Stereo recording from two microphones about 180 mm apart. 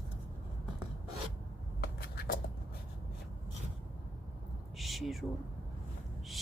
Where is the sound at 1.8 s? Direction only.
60° left (ahead or behind).